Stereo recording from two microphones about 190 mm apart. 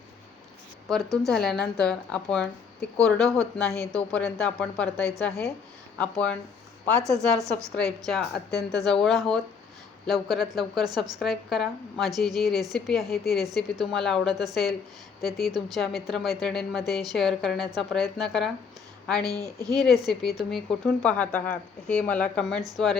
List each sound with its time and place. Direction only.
0.9 s a woman's voice: centre (ahead or behind)
8.3 s speech: 55° left (ahead or behind)
8.7 s a woman's voice: centre (ahead or behind)